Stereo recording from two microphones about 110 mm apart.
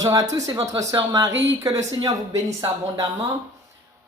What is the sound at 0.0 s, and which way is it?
A woman's voice, 30° right (ahead or behind).